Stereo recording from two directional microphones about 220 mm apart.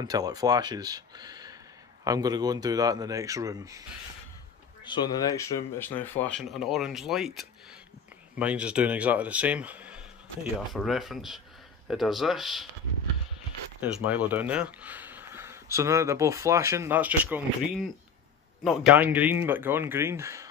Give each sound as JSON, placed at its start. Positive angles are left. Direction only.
{"t": 0.0, "sound": "speech", "side_deg": -15}
{"t": 4.8, "sound": "speech", "side_deg": 20}
{"t": 13.7, "sound": "speech", "side_deg": -5}
{"t": 18.9, "sound": "speech", "side_deg": -10}